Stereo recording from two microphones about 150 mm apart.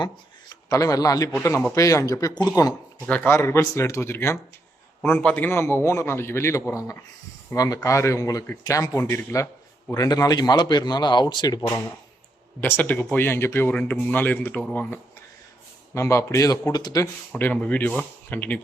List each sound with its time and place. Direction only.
0.7 s a man's voice: 25° left (ahead or behind)
12.5 s a man's voice: 10° left (ahead or behind)
16.0 s speech: 20° left (ahead or behind)
17.3 s a man's voice: 10° left (ahead or behind)